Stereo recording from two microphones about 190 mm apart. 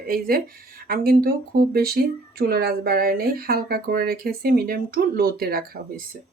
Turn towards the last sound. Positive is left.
turn(degrees=-55)  # may be behind; listen again after turning